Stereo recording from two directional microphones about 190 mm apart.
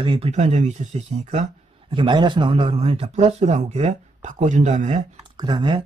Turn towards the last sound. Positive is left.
turn(degrees=-25)  # may be behind; listen again after turning